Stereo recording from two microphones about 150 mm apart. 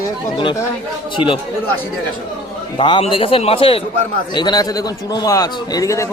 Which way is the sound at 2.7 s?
35° left (ahead or behind).